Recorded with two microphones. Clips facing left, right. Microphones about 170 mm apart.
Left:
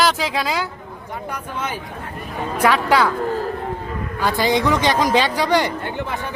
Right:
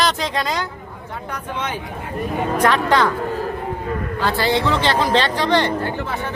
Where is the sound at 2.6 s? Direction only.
10° left (ahead or behind).